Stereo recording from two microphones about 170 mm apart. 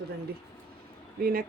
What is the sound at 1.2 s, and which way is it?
Speech, 60° right (ahead or behind).